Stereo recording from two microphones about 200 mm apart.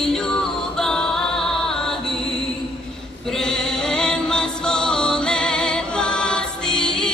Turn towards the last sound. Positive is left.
turn(degrees=5)  # may be behind; listen again after turning